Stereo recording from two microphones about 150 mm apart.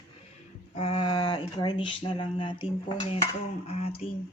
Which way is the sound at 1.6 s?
35° left (ahead or behind).